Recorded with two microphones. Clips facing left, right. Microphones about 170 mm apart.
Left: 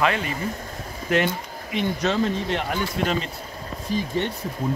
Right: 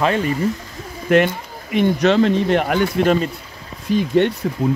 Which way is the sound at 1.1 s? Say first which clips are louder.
Right 7 dB; 55° right (ahead or behind).